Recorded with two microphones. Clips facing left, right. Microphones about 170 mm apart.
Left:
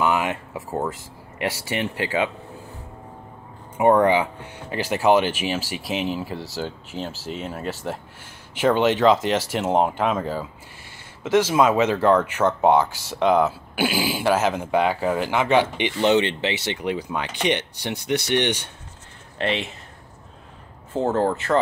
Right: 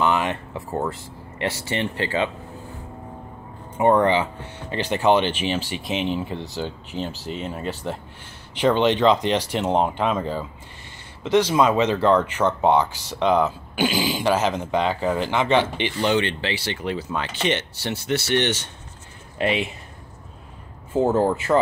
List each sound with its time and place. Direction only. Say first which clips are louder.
0.0 s a sound: even; 10° left (ahead or behind)
1.4 s speech: even; 10° left (ahead or behind)
3.7 s speech: left 1 dB; 10° left (ahead or behind)
16.0 s speech: left 3 dB; 20° left (ahead or behind)
19.3 s speech: right 2 dB; 10° right (ahead or behind)
20.9 s speech: right 2 dB; 10° right (ahead or behind)